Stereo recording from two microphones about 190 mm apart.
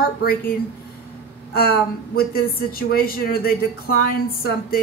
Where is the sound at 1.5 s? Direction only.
55° left (ahead or behind).